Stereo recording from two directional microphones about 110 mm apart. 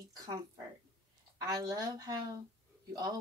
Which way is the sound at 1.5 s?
35° right (ahead or behind).